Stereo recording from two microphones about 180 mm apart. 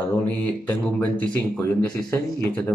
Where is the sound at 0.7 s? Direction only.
10° left (ahead or behind).